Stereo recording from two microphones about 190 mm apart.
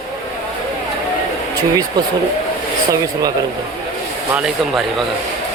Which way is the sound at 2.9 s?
20° right (ahead or behind).